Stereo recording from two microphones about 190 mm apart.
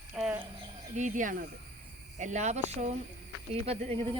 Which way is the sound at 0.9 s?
40° right (ahead or behind).